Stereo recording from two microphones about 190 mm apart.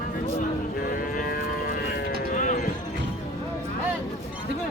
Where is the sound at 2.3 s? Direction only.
40° left (ahead or behind).